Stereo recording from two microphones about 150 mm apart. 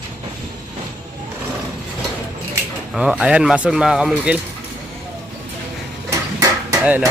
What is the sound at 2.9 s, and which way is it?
Speech, 5° right (ahead or behind).